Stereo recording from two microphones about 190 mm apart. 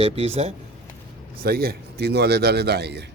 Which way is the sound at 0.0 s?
30° right (ahead or behind).